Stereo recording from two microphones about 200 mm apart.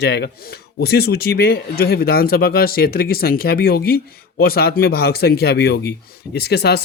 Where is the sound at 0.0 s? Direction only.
55° left (ahead or behind).